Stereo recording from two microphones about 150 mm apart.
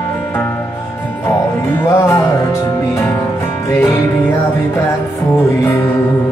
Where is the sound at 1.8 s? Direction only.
20° left (ahead or behind).